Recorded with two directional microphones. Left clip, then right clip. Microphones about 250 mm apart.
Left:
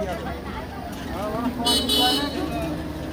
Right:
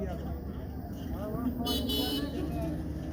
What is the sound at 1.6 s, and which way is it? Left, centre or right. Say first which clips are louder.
Speech: left 13 dB; centre.